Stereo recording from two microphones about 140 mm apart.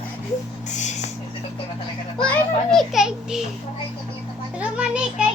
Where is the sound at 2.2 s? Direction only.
10° left (ahead or behind).